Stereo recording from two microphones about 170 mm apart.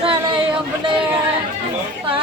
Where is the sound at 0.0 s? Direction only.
30° right (ahead or behind).